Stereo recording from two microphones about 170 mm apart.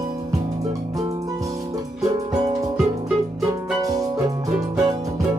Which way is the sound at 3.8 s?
20° right (ahead or behind).